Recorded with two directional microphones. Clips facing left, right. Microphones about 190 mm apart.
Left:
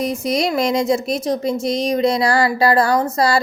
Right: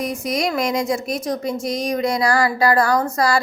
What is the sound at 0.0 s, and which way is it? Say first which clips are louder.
Speech: left 3 dB; 25° left (ahead or behind).